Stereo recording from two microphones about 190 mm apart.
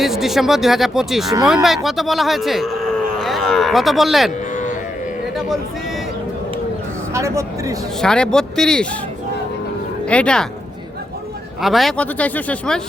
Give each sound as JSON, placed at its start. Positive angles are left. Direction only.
{"t": 0.0, "sound": "speech", "side_deg": 0}
{"t": 3.2, "sound": "cattle", "side_deg": 0}
{"t": 4.5, "sound": "a sound", "side_deg": 40}
{"t": 7.1, "sound": "speech", "side_deg": -15}
{"t": 8.0, "sound": "speech", "side_deg": 5}
{"t": 10.1, "sound": "speech", "side_deg": 5}
{"t": 11.6, "sound": "speech", "side_deg": 0}